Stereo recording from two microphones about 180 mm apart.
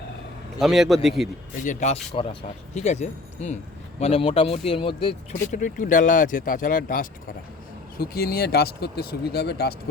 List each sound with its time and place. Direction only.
0.6 s a man's voice: centre (ahead or behind)
1.6 s speech: 40° left (ahead or behind)
5.5 s speech: 45° left (ahead or behind); by 9.7 s 65° left (ahead or behind)